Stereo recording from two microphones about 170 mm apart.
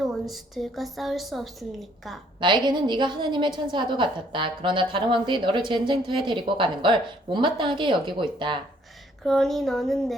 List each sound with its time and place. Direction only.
0.0 s a woman's voice: centre (ahead or behind)
2.4 s a woman's voice: 25° right (ahead or behind)
9.2 s speech: centre (ahead or behind)